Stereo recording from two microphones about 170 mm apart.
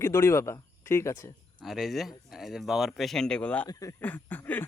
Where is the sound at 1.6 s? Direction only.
Centre (ahead or behind).